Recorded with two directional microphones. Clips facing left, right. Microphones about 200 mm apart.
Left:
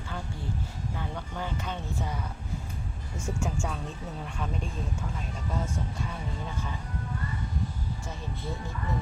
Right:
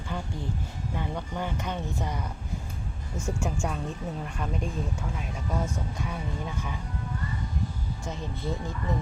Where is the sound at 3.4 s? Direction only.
10° right (ahead or behind).